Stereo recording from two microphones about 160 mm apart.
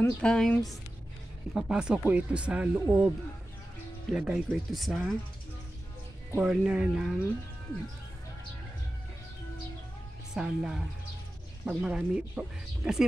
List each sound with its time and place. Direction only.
0.0 s speech: 5° left (ahead or behind); by 3.1 s 10° right (ahead or behind)
4.1 s speech: 5° right (ahead or behind)
6.4 s speech: 5° right (ahead or behind)
10.3 s speech: 5° right (ahead or behind)